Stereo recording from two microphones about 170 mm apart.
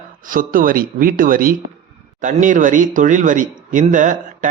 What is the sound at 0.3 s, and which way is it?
Speech, 55° right (ahead or behind).